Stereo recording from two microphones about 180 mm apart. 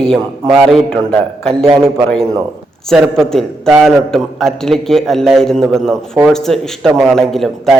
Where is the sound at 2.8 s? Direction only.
Centre (ahead or behind).